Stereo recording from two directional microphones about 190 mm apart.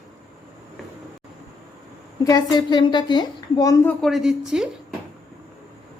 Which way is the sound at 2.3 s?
20° left (ahead or behind).